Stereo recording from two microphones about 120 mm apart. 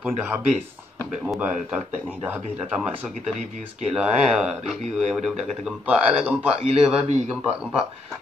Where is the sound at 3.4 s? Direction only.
90° right.